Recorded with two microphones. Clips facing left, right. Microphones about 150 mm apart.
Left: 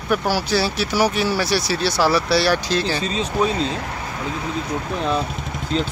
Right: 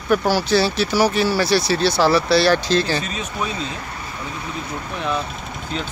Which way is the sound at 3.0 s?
30° left (ahead or behind).